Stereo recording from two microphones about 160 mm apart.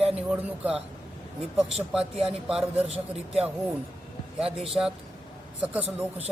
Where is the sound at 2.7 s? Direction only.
40° right (ahead or behind).